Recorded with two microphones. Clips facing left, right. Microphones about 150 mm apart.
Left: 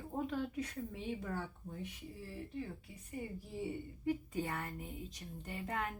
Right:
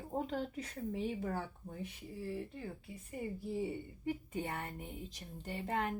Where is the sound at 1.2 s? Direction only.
40° right (ahead or behind).